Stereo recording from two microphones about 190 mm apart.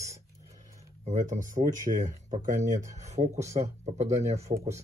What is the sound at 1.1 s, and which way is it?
Speech, 40° right (ahead or behind).